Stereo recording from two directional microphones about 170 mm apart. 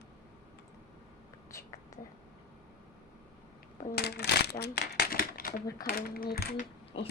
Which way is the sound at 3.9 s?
70° left (ahead or behind).